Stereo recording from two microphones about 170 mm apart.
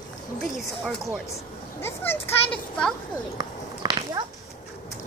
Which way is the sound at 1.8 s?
10° left (ahead or behind).